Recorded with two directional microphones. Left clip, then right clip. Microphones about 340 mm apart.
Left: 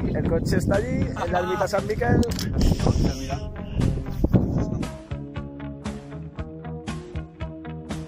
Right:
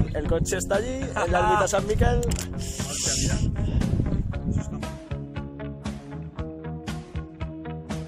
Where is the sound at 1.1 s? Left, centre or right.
Right.